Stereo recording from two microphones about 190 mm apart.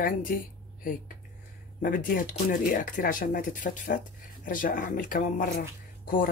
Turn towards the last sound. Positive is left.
turn(degrees=45)  # may be behind; listen again after turning